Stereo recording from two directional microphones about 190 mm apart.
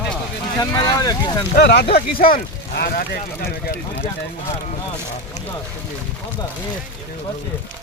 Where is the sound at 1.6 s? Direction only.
55° left (ahead or behind).